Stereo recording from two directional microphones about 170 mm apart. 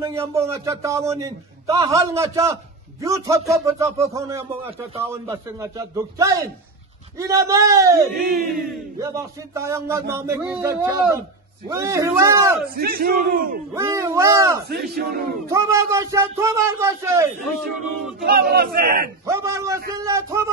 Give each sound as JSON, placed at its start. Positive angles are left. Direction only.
{"t": 0.0, "sound": "a man's voice", "side_deg": -15}
{"t": 12.6, "sound": "a man's voice", "side_deg": -60}
{"t": 13.7, "sound": "a man's voice", "side_deg": -15}
{"t": 15.0, "sound": "a man's voice", "side_deg": -60}
{"t": 15.5, "sound": "a man's voice", "side_deg": -15}
{"t": 17.5, "sound": "a man's voice", "side_deg": 0}
{"t": 18.2, "sound": "a man's voice", "side_deg": -65}
{"t": 19.2, "sound": "a man's voice", "side_deg": -15}